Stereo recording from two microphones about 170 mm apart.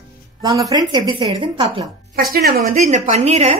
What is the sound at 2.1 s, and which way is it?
A woman's voice, 60° right (ahead or behind).